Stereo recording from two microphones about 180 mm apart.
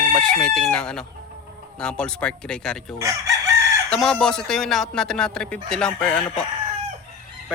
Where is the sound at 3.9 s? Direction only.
5° left (ahead or behind).